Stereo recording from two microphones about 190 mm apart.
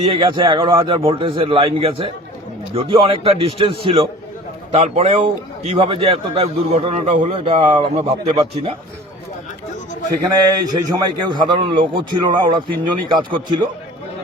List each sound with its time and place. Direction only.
0.0 s a man's voice: 25° right (ahead or behind)
10.3 s a man's voice: 20° right (ahead or behind)